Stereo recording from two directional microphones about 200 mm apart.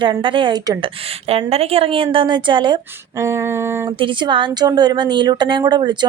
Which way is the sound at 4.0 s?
25° right (ahead or behind).